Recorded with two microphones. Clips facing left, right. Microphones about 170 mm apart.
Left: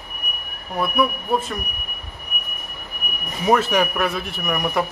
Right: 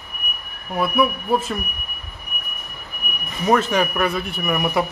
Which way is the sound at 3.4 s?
5° left (ahead or behind).